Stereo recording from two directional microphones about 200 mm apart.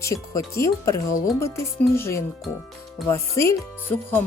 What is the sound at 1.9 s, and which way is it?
Speech, 10° left (ahead or behind).